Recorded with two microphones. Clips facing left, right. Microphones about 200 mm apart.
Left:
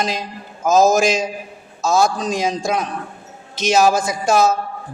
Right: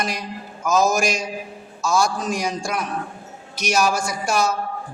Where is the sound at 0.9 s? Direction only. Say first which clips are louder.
Left 6 dB; 90° left.